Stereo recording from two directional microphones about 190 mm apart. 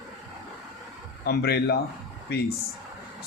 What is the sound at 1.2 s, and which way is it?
Speech, 60° left (ahead or behind).